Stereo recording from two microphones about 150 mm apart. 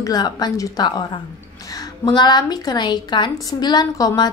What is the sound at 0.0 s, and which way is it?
A woman's voice, 25° left (ahead or behind).